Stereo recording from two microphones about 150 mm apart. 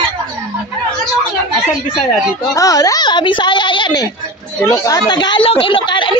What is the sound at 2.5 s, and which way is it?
A woman's voice, 25° left (ahead or behind).